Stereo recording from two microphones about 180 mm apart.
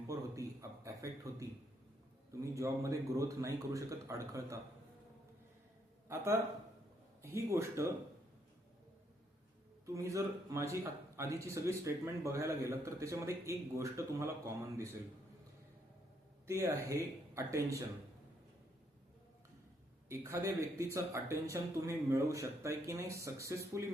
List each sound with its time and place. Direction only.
0.1 s a sound: 15° right (ahead or behind)
2.3 s a man's voice: 15° right (ahead or behind)
7.2 s a man's voice: 15° right (ahead or behind)
9.8 s a man's voice: 15° right (ahead or behind)
16.5 s a man's voice: 15° right (ahead or behind)
20.1 s a man's voice: 15° right (ahead or behind)